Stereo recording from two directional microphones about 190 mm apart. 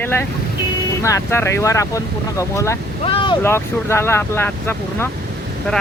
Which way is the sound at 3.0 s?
25° left (ahead or behind).